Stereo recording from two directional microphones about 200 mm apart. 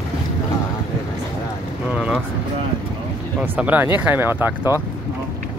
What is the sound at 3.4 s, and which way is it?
Speech, 5° right (ahead or behind).